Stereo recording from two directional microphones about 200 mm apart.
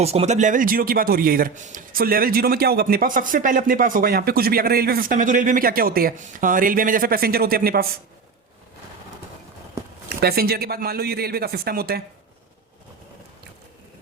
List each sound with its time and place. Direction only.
0.0 s speech: 30° right (ahead or behind); by 7.9 s 50° right (ahead or behind)
10.2 s speech: 50° right (ahead or behind)